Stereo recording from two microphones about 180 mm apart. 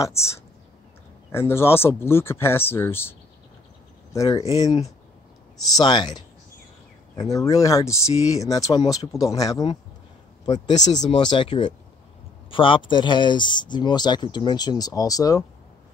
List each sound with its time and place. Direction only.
0.0 s speech: 15° left (ahead or behind)
5.8 s speech: 25° left (ahead or behind)
10.5 s speech: 40° left (ahead or behind)
11.1 s speech: 25° left (ahead or behind)